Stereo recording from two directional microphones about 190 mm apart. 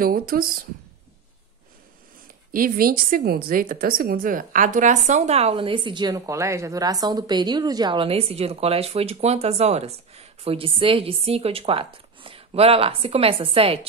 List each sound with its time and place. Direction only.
0.0 s speech: 50° right (ahead or behind)
2.5 s speech: 45° right (ahead or behind); by 13.7 s 30° right (ahead or behind)